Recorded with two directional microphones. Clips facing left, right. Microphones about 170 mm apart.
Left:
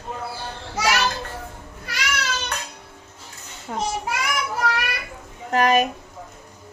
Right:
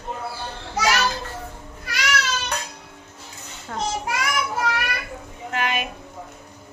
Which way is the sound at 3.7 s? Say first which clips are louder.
Left 2 dB; 15° left (ahead or behind).